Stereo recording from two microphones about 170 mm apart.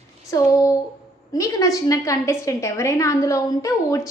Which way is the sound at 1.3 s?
20° left (ahead or behind).